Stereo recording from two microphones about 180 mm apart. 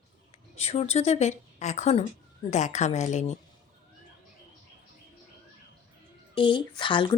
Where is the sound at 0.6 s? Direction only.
35° left (ahead or behind).